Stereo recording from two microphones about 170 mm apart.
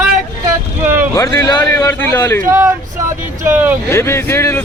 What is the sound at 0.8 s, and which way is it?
Speech, 10° right (ahead or behind).